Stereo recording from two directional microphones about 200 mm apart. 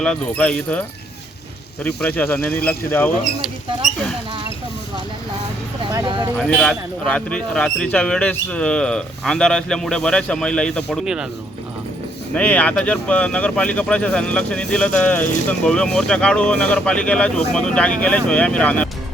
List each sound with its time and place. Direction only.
0.0 s speech: 5° left (ahead or behind)
2.0 s speech: 10° left (ahead or behind)
5.9 s speech: 20° right (ahead or behind)
6.5 s speech: 5° left (ahead or behind)
12.3 s speech: 5° left (ahead or behind)